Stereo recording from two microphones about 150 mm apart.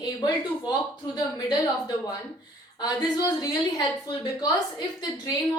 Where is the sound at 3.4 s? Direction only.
25° left (ahead or behind).